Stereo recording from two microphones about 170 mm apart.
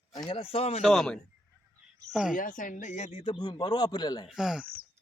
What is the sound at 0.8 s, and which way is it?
Speech, centre (ahead or behind).